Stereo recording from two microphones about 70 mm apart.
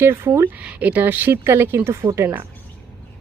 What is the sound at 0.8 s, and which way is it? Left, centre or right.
Speech, right.